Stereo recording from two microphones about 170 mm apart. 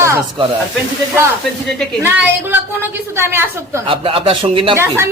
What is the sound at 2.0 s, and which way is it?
A woman's voice, 10° right (ahead or behind).